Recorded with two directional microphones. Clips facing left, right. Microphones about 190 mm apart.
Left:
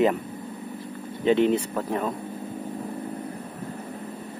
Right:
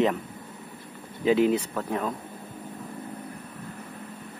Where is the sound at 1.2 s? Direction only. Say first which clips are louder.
Left 1 dB; 5° right (ahead or behind).